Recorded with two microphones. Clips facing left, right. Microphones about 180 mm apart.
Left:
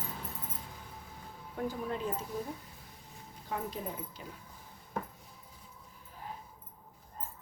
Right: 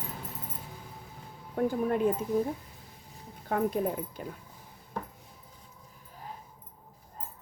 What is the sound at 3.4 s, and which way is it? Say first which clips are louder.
Speech: right 10 dB; 55° right (ahead or behind).